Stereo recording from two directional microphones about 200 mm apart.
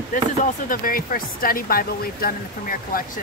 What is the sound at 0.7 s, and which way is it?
Speech, 45° left (ahead or behind).